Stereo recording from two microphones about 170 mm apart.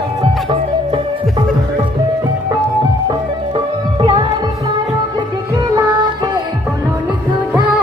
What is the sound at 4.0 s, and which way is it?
Music, 30° right (ahead or behind).